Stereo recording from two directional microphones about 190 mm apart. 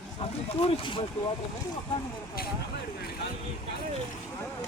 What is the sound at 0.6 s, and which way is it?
Speech, 30° left (ahead or behind).